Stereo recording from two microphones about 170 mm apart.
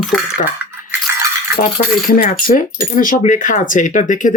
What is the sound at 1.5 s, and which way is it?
Speech, 55° left (ahead or behind).